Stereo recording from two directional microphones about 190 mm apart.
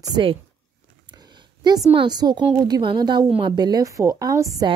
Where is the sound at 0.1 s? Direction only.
25° right (ahead or behind).